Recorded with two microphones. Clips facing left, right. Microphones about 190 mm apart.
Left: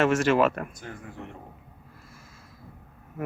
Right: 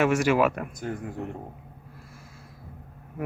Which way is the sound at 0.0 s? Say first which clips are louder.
Even; 10° right (ahead or behind).